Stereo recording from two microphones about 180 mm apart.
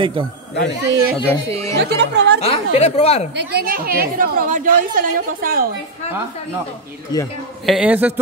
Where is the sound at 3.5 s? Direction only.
55° right (ahead or behind).